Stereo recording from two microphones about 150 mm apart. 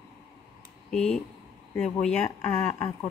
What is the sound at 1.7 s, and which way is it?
Speech, 15° left (ahead or behind).